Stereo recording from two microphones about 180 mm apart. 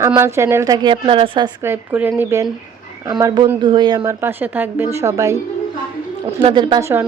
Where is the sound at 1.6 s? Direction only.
10° right (ahead or behind).